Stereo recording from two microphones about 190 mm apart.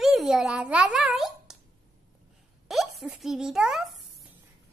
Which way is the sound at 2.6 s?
Centre (ahead or behind).